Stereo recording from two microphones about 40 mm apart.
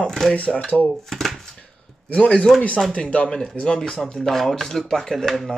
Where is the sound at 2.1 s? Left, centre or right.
Left.